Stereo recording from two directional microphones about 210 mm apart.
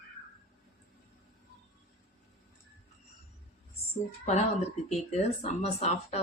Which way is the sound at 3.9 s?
30° left (ahead or behind).